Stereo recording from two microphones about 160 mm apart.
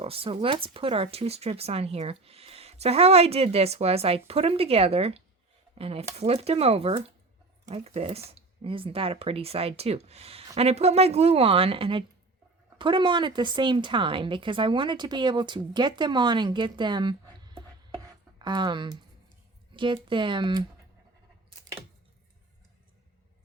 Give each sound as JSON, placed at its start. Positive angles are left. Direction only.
{"t": 0.0, "sound": "speech", "side_deg": -35}
{"t": 17.9, "sound": "chopping", "side_deg": -25}
{"t": 19.7, "sound": "speech", "side_deg": -30}